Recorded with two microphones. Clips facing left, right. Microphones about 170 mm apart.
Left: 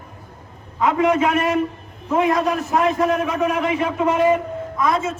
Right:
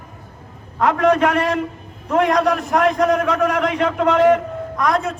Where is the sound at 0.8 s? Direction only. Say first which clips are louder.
Right 2 dB; 75° right (ahead or behind).